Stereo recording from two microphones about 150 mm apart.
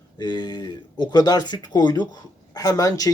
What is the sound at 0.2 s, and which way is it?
Speech, 30° left (ahead or behind).